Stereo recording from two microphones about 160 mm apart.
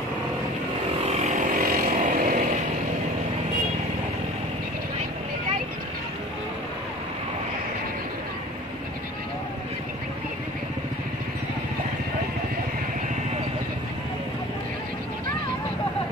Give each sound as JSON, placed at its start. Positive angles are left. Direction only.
{"t": 1.0, "sound": "vehicle", "side_deg": -40}